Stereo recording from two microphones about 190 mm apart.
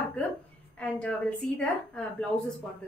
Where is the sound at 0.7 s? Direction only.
5° left (ahead or behind).